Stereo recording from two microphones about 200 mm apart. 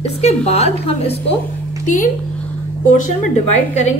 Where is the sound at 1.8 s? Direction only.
40° left (ahead or behind).